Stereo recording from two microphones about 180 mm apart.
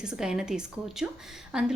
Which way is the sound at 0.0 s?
5° right (ahead or behind).